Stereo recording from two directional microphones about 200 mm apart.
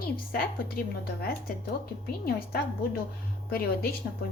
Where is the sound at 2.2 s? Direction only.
50° left (ahead or behind).